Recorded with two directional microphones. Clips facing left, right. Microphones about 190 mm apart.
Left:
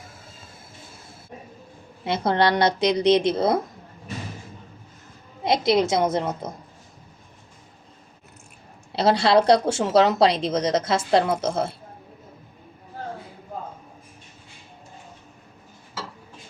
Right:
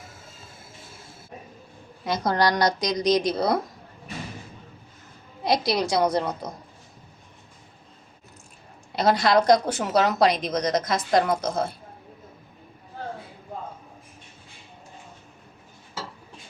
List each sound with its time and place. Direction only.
2.0 s speech: 25° left (ahead or behind)
5.4 s speech: 20° left (ahead or behind)
8.9 s speech: 30° left (ahead or behind)